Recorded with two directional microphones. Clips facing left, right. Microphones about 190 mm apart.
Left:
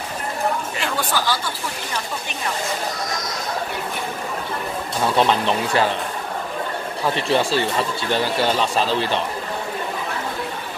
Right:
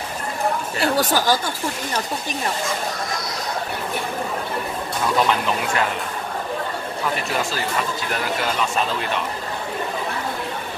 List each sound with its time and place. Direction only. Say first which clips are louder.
0.7 s speech: right 4 dB; 40° right (ahead or behind)
5.0 s speech: left 2 dB; 30° left (ahead or behind)
7.2 s speech: left 5 dB; 30° left (ahead or behind)